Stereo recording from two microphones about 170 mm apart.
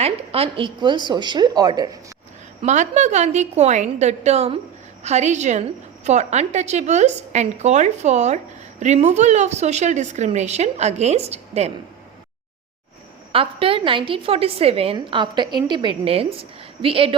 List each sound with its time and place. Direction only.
0.0 s a woman's voice: 35° right (ahead or behind)
2.6 s a woman's voice: 45° right (ahead or behind)
13.3 s a woman's voice: 35° right (ahead or behind)